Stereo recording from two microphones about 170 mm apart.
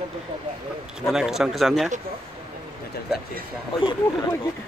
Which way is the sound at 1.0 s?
5° right (ahead or behind).